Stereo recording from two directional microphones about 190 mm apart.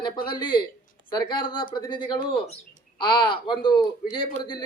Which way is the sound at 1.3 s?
25° left (ahead or behind).